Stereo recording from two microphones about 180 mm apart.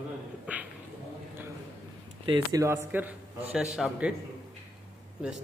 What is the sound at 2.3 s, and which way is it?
A man's voice, 20° right (ahead or behind).